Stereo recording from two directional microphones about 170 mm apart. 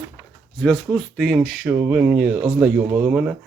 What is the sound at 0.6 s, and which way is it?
Speech, 5° left (ahead or behind).